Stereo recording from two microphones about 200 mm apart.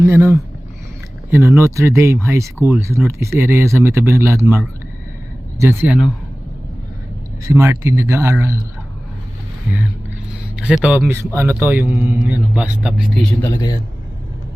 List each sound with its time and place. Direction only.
0.0 s speech: 10° right (ahead or behind)
7.4 s speech: 15° right (ahead or behind)
10.6 s speech: 5° right (ahead or behind)
13.5 s a man's voice: 20° left (ahead or behind)